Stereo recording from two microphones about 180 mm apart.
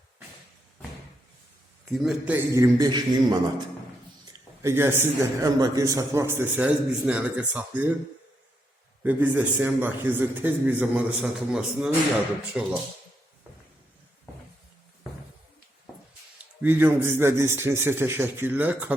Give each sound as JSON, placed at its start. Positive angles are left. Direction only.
{"t": 1.8, "sound": "a man's voice", "side_deg": 0}
{"t": 9.0, "sound": "a man's voice", "side_deg": -10}
{"t": 16.6, "sound": "a man's voice", "side_deg": -10}